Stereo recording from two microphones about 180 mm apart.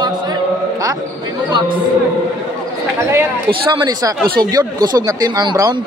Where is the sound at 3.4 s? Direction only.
25° right (ahead or behind).